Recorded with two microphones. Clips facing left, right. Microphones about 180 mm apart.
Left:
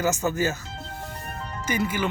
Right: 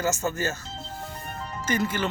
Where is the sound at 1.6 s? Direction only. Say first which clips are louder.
Even; 10° left (ahead or behind).